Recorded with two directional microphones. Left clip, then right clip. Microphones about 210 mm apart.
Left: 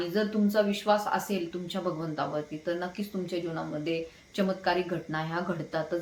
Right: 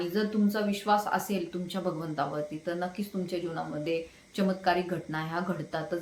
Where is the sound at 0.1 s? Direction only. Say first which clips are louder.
Left 2 dB; centre (ahead or behind).